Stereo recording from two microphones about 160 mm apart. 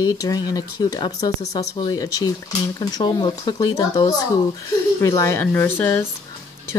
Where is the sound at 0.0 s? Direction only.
20° left (ahead or behind).